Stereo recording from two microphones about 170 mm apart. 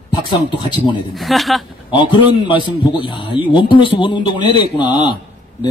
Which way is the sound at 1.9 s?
30° left (ahead or behind).